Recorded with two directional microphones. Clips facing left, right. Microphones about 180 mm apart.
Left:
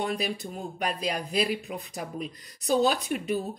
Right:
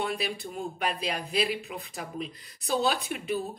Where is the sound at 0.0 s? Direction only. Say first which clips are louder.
Left 2 dB; 40° left (ahead or behind).